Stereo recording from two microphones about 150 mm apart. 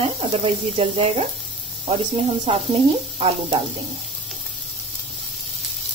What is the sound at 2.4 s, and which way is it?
Speech, 40° right (ahead or behind).